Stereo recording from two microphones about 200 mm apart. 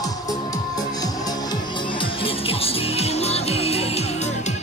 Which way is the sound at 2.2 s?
30° left (ahead or behind).